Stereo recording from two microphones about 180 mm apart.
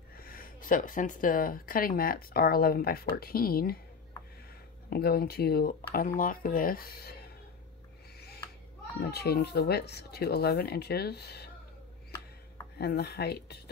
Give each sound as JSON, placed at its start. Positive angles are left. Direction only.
{"t": 0.2, "sound": "speech", "side_deg": 50}
{"t": 4.8, "sound": "speech", "side_deg": 60}
{"t": 9.0, "sound": "speech", "side_deg": 65}
{"t": 12.7, "sound": "speech", "side_deg": 65}